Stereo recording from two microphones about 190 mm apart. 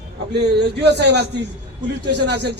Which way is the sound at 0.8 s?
65° right (ahead or behind).